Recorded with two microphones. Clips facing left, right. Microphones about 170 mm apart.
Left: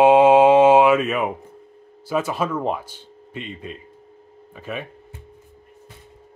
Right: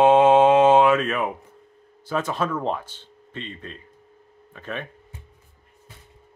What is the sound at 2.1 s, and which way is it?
Speech, 10° left (ahead or behind).